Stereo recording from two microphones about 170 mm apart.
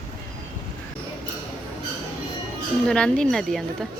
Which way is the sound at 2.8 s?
5° left (ahead or behind).